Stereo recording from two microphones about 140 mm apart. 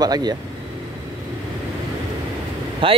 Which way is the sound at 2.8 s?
40° right (ahead or behind).